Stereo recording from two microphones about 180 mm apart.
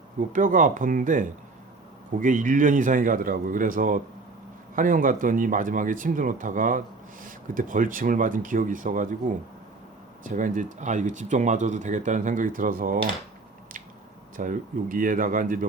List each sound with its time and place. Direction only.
0.3 s speech: 45° right (ahead or behind)
10.2 s speech: 45° right (ahead or behind)
14.3 s speech: 45° right (ahead or behind)